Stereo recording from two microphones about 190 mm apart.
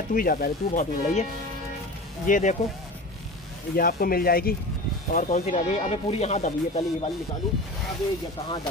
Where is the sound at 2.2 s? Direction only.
45° left (ahead or behind).